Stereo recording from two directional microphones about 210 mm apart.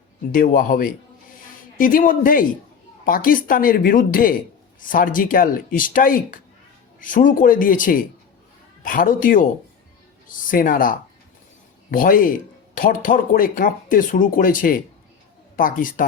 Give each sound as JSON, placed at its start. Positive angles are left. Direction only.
{"t": 0.3, "sound": "speech", "side_deg": 40}